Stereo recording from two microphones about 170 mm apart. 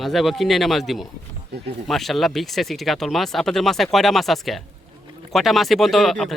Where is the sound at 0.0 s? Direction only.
Centre (ahead or behind).